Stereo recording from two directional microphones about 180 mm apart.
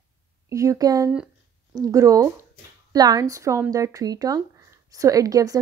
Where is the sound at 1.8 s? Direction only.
20° right (ahead or behind).